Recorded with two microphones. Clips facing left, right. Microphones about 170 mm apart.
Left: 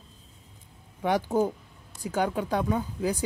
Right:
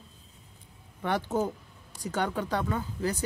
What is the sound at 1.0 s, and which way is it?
Speech, 10° left (ahead or behind).